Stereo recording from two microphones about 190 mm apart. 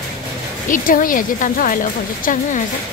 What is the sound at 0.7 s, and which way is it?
Speech, 45° left (ahead or behind).